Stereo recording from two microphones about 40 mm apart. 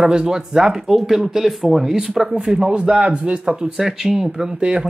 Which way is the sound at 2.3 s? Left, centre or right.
Right.